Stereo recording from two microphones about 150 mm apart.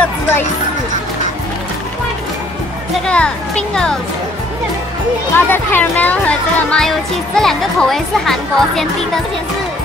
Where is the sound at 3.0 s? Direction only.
5° left (ahead or behind).